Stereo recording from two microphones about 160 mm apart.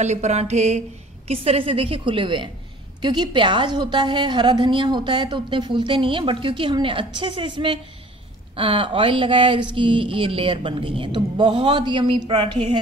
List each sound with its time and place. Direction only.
0.0 s a woman's voice: 45° right (ahead or behind)